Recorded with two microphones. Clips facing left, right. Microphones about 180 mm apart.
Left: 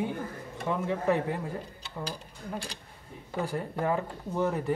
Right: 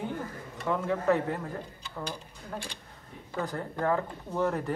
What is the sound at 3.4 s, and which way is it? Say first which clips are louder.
Speech: even; 15° left (ahead or behind).